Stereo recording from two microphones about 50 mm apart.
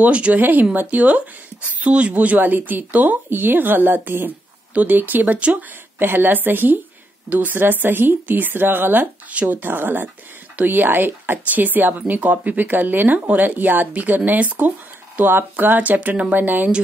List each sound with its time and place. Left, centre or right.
0.0 s a woman's voice: right
9.3 s speech: right
9.6 s a woman's voice: right